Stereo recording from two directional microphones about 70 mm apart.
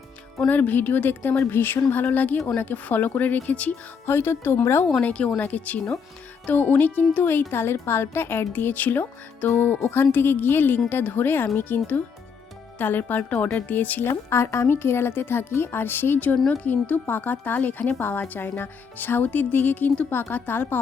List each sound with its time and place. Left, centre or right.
0.4 s speech: left
4.0 s speech: left
4.9 s speech: centre
14.1 s speech: left